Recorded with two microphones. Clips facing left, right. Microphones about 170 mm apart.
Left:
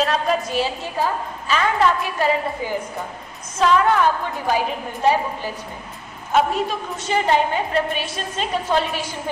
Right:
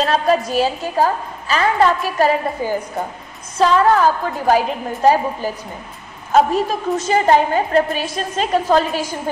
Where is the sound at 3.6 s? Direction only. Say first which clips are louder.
Right 3 dB; 35° right (ahead or behind).